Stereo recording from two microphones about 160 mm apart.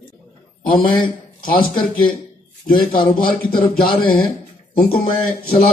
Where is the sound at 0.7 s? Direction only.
65° left (ahead or behind).